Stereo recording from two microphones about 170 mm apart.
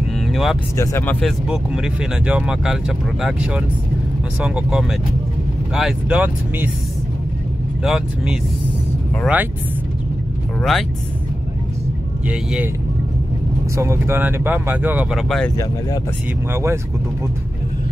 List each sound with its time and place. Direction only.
0.3 s music: centre (ahead or behind)
0.7 s speech: 15° left (ahead or behind)
1.2 s speech: 5° right (ahead or behind)
7.8 s speech: 5° right (ahead or behind)
10.6 s speech: centre (ahead or behind)
13.7 s speech: 15° right (ahead or behind); by 15.5 s 5° left (ahead or behind)
16.5 s speech: 15° right (ahead or behind)